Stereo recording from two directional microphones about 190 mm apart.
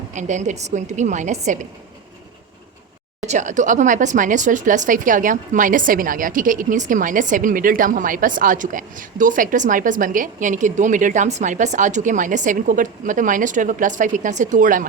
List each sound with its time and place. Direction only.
0.1 s a woman's voice: 40° right (ahead or behind)
3.2 s speech: 40° right (ahead or behind)